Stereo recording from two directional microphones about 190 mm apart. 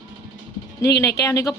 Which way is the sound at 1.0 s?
15° left (ahead or behind).